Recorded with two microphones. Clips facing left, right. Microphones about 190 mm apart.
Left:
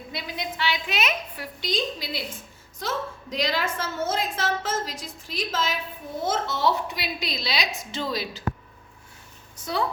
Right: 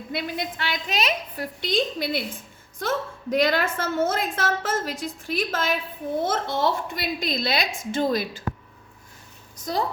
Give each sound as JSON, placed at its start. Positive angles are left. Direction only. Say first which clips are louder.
{"t": 0.1, "sound": "a woman's voice", "louder": "right 5 dB", "side_deg": -55}
{"t": 1.6, "sound": "a woman's voice", "louder": "right 4 dB", "side_deg": -55}